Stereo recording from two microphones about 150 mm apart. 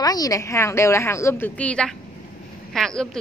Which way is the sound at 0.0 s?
25° left (ahead or behind).